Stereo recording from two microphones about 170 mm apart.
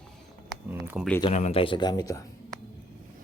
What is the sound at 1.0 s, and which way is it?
Speech, 5° right (ahead or behind).